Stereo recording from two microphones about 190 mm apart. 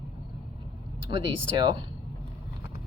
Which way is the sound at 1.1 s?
25° right (ahead or behind).